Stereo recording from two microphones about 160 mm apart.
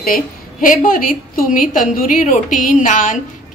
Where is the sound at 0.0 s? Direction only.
60° left (ahead or behind).